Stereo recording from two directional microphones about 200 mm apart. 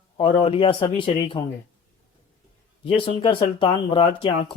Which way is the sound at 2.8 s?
25° left (ahead or behind).